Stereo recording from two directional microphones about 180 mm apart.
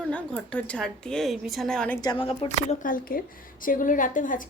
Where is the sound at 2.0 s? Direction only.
25° left (ahead or behind).